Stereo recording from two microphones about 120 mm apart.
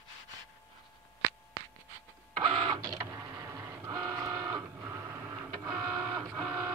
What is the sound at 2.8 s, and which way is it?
Printer, 30° right (ahead or behind).